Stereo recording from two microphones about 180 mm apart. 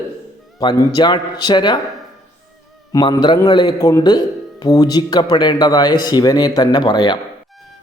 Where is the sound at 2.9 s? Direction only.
20° left (ahead or behind).